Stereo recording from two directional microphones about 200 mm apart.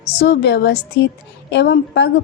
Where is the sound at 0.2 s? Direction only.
60° left (ahead or behind).